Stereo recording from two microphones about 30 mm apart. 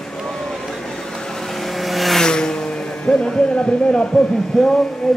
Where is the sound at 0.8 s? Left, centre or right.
Left; by 2.2 s centre.